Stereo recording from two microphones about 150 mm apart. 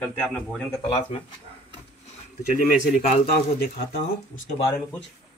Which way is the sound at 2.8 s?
50° left (ahead or behind).